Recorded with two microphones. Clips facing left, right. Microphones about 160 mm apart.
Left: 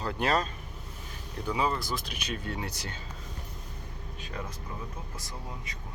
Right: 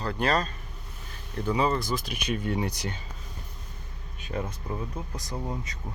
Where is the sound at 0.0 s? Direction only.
20° left (ahead or behind).